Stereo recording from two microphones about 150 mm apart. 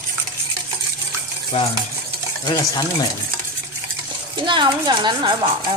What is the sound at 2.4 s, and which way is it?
Stir, 25° left (ahead or behind).